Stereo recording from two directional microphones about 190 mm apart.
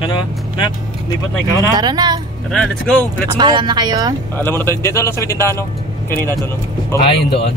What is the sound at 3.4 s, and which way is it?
Speech, 25° right (ahead or behind).